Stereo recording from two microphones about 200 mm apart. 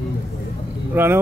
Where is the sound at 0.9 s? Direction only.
10° right (ahead or behind).